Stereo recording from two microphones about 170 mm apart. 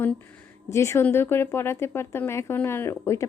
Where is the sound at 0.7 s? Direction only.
15° left (ahead or behind).